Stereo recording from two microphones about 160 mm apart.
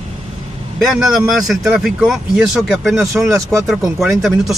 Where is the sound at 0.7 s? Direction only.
Centre (ahead or behind).